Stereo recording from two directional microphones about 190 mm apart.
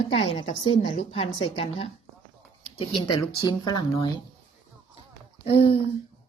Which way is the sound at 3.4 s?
20° left (ahead or behind).